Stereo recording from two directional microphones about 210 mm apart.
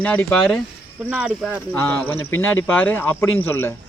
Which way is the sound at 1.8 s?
10° left (ahead or behind).